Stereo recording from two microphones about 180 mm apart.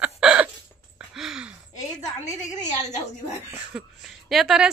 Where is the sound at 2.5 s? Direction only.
20° left (ahead or behind).